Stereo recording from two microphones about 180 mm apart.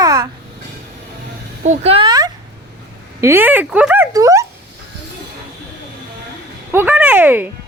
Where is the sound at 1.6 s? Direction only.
40° right (ahead or behind).